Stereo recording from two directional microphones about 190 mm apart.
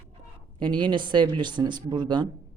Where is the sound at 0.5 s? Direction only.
25° right (ahead or behind).